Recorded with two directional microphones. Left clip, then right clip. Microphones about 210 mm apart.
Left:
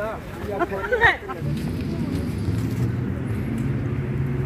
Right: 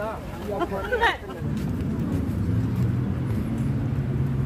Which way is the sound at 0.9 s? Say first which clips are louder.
Left 5 dB; 35° left (ahead or behind).